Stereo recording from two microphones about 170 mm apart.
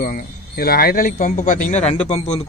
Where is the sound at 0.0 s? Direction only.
60° left (ahead or behind).